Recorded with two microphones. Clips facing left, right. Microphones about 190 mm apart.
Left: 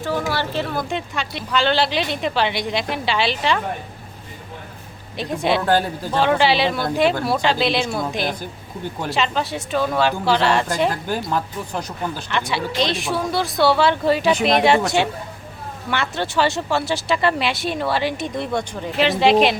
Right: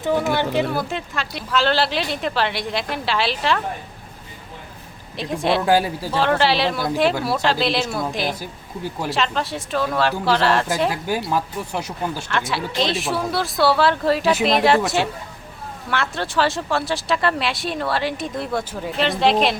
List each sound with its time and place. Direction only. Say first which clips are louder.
0.0 s speech: right 3 dB; 15° right (ahead or behind); by 3.6 s centre (ahead or behind)
5.1 s speech: even; centre (ahead or behind)